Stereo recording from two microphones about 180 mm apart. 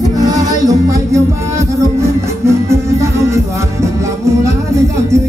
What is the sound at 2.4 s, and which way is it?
Music, 15° right (ahead or behind).